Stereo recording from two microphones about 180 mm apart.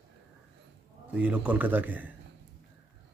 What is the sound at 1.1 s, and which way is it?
Speech, 5° right (ahead or behind).